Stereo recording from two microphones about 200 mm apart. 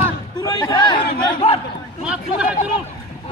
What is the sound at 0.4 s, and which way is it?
Speech, 20° left (ahead or behind).